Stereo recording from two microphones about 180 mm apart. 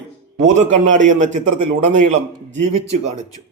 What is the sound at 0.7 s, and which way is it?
A man's voice, 40° right (ahead or behind).